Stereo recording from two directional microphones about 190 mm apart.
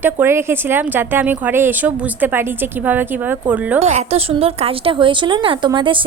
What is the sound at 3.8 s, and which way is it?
A woman's voice, 35° right (ahead or behind).